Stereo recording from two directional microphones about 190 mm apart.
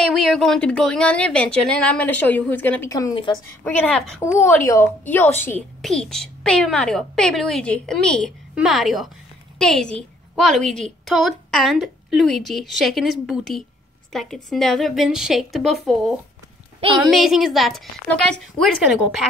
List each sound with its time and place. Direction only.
0.0 s speech: centre (ahead or behind); by 3.3 s 25° left (ahead or behind)
3.6 s a woman's voice: 10° left (ahead or behind)
16.8 s a woman's voice: 25° right (ahead or behind)
17.1 s a woman's voice: centre (ahead or behind)